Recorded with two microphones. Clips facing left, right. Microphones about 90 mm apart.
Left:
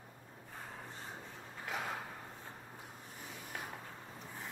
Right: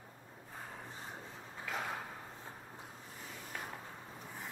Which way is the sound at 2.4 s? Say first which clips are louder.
Right 1 dB; 20° right (ahead or behind).